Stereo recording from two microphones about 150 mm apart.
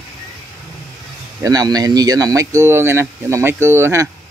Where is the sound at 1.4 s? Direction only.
25° right (ahead or behind).